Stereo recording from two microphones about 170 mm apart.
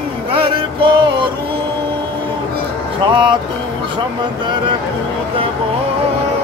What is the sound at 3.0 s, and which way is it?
Music, 25° right (ahead or behind).